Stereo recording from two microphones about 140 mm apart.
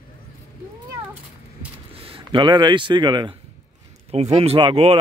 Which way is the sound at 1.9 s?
40° right (ahead or behind).